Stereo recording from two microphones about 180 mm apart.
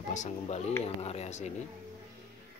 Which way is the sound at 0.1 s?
40° left (ahead or behind).